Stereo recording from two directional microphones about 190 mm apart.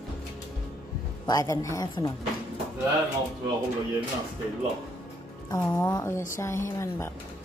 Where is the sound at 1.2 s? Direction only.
20° left (ahead or behind).